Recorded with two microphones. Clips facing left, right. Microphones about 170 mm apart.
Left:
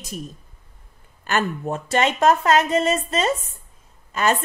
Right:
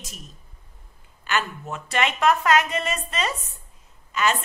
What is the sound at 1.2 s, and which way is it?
Speech, 45° left (ahead or behind).